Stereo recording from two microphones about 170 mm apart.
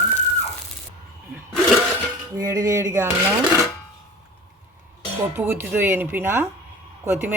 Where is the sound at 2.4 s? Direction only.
20° right (ahead or behind).